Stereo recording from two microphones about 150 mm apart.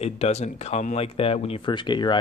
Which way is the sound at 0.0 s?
45° left (ahead or behind).